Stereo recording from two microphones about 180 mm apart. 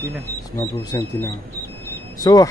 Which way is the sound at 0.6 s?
15° left (ahead or behind).